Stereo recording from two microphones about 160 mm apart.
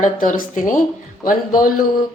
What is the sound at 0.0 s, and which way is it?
Speech, 55° left (ahead or behind).